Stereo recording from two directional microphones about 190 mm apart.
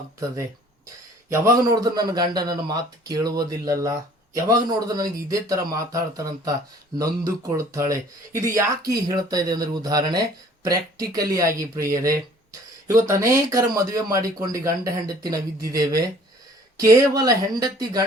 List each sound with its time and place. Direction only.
1.3 s a man's voice: 20° right (ahead or behind)